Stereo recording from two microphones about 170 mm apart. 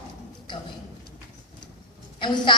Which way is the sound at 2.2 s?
30° left (ahead or behind).